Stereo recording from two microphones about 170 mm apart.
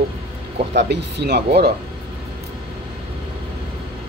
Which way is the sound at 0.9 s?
75° right (ahead or behind).